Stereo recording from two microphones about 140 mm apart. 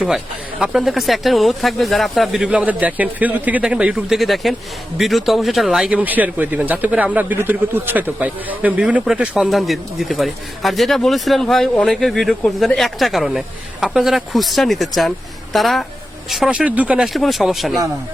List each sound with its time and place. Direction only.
0.6 s speech: centre (ahead or behind)